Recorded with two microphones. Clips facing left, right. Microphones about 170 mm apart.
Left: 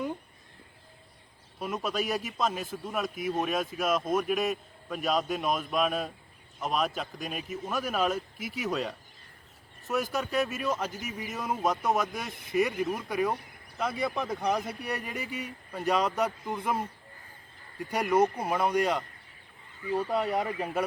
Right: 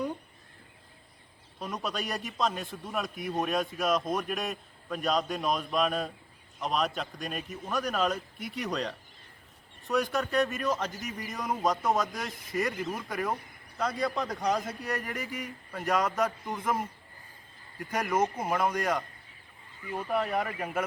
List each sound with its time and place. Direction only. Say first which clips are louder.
1.5 s a man's voice: left 3 dB; 5° left (ahead or behind)
18.0 s speech: left 4 dB; 15° left (ahead or behind)